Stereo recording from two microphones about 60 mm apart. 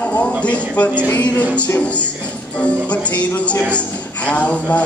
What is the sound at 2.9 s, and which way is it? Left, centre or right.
A woman's voice, left.